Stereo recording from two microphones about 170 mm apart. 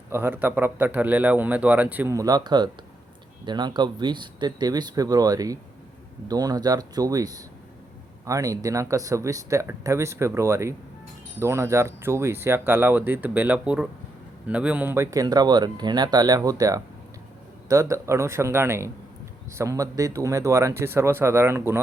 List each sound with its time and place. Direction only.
0.1 s a man's voice: 10° right (ahead or behind)